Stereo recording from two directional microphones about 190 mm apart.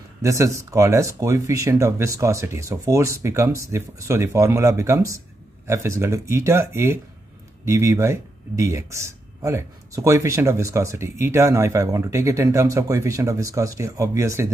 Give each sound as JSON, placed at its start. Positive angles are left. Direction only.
{"t": 0.2, "sound": "speech", "side_deg": -15}